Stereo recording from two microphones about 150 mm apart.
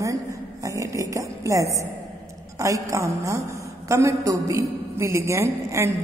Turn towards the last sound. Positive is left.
turn(degrees=-20)  # may be behind; listen again after turning